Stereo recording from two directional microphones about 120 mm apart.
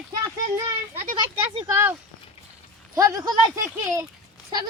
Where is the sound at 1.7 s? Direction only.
20° right (ahead or behind).